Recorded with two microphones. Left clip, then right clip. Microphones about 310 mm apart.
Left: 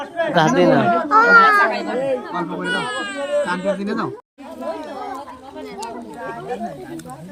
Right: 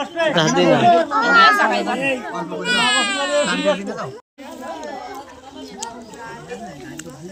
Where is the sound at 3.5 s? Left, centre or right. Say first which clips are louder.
Right 2 dB; left.